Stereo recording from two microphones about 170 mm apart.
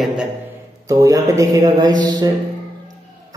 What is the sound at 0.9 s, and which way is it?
A man's voice, 20° right (ahead or behind).